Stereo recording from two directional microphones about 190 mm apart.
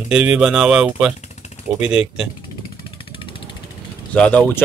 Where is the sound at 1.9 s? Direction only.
Centre (ahead or behind).